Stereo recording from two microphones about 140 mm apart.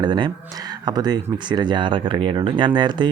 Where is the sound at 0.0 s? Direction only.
35° right (ahead or behind).